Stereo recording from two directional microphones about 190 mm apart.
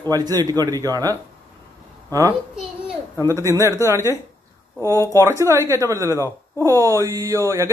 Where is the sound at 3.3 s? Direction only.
15° right (ahead or behind).